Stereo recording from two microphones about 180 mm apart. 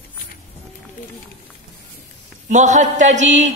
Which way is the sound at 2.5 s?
40° right (ahead or behind).